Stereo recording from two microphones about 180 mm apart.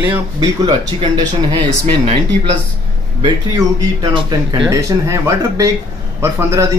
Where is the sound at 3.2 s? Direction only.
25° right (ahead or behind).